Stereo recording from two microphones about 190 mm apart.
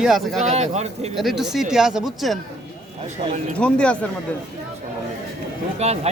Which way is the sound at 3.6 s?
5° left (ahead or behind).